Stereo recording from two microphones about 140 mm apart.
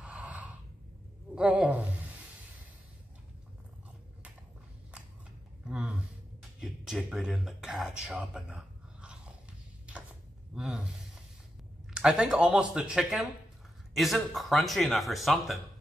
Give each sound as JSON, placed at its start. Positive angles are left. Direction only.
{"t": 0.0, "sound": "a sound", "side_deg": -10}
{"t": 1.3, "sound": "speech", "side_deg": -10}
{"t": 5.7, "sound": "a sound", "side_deg": -5}
{"t": 6.6, "sound": "speech", "side_deg": -5}
{"t": 10.5, "sound": "speech", "side_deg": -5}
{"t": 11.9, "sound": "speech", "side_deg": -5}